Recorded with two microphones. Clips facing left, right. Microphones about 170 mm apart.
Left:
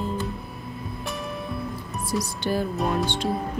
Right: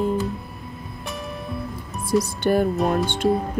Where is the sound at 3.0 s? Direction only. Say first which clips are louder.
Right 5 dB; 55° right (ahead or behind).